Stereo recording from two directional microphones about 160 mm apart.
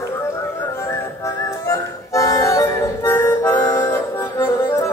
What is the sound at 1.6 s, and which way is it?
Music, 20° left (ahead or behind).